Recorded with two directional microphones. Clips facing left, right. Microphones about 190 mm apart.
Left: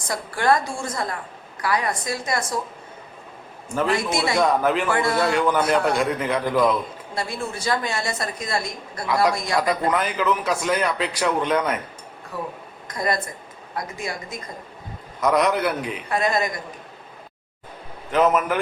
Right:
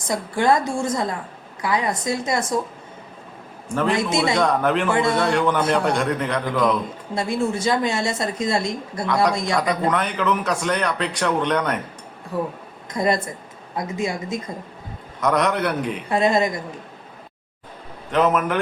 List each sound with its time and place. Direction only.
0.1 s a woman's voice: 20° right (ahead or behind)
3.7 s speech: 5° left (ahead or behind)
4.9 s a woman's voice: 20° right (ahead or behind)
5.1 s speech: centre (ahead or behind)
7.1 s a woman's voice: 20° right (ahead or behind)
9.6 s speech: centre (ahead or behind)
12.9 s a woman's voice: 25° right (ahead or behind)
15.2 s speech: centre (ahead or behind)
16.0 s a woman's voice: 25° right (ahead or behind)
18.1 s speech: centre (ahead or behind)